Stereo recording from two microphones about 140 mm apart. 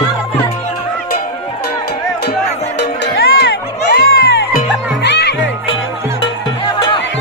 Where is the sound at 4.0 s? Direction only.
90° left.